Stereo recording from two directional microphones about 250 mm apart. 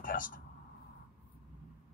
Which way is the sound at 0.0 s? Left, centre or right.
Left.